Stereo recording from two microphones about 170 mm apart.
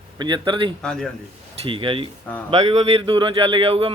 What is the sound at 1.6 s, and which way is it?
A man's voice, 30° right (ahead or behind).